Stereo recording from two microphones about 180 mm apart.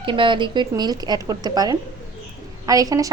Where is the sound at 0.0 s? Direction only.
30° right (ahead or behind).